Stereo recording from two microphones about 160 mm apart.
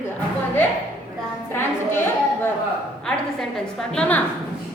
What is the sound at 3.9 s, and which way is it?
Speech, 10° left (ahead or behind).